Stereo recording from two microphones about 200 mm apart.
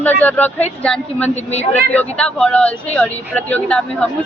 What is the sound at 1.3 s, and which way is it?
Speech, 35° left (ahead or behind).